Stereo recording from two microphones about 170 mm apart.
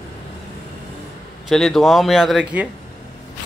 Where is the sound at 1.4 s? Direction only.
Centre (ahead or behind).